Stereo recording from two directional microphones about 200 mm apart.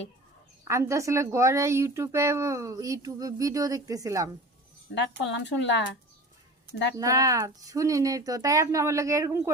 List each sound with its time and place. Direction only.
0.7 s a woman's voice: 15° right (ahead or behind)
4.9 s speech: 60° left (ahead or behind)
6.9 s a woman's voice: 15° right (ahead or behind)